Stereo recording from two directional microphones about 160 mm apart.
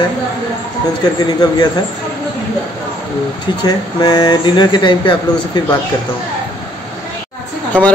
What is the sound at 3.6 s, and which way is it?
A man's voice, 25° left (ahead or behind).